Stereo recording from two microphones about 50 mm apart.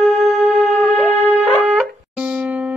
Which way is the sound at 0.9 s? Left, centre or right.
Right.